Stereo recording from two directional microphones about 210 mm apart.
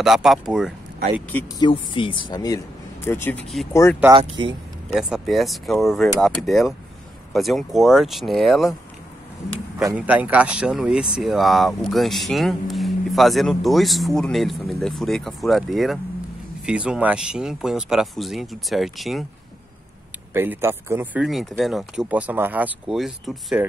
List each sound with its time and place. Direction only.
0.0 s speech: centre (ahead or behind)
1.6 s speech: 25° left (ahead or behind)
4.4 s speech: 20° right (ahead or behind)
4.9 s speech: centre (ahead or behind)
9.8 s speech: 5° right (ahead or behind)
20.3 s speech: 10° right (ahead or behind)